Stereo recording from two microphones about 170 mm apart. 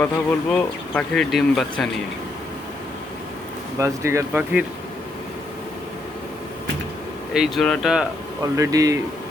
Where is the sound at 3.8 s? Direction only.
15° right (ahead or behind).